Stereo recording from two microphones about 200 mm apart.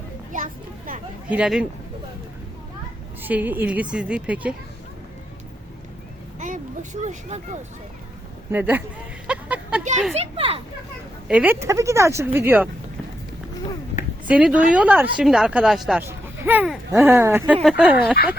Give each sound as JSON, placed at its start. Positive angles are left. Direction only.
{"t": 0.3, "sound": "a sound", "side_deg": -40}
{"t": 1.3, "sound": "speech", "side_deg": -5}
{"t": 3.2, "sound": "speech", "side_deg": -10}
{"t": 6.4, "sound": "a sound", "side_deg": -40}
{"t": 8.5, "sound": "speech", "side_deg": -10}
{"t": 9.2, "sound": "a sound", "side_deg": -5}
{"t": 10.2, "sound": "a child's voice", "side_deg": -30}
{"t": 11.3, "sound": "speech", "side_deg": -10}
{"t": 14.3, "sound": "speech", "side_deg": -5}
{"t": 17.0, "sound": "speech", "side_deg": -15}